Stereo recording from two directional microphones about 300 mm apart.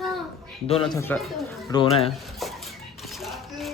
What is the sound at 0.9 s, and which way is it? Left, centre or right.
Speech, centre.